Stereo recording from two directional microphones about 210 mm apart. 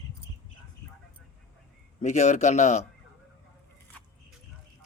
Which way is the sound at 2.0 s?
35° left (ahead or behind).